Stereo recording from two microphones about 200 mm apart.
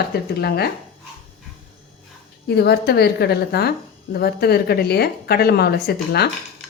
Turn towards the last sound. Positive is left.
turn(degrees=55)  # may be behind; listen again after turning